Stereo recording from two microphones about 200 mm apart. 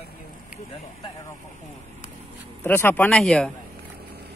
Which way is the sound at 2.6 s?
10° left (ahead or behind).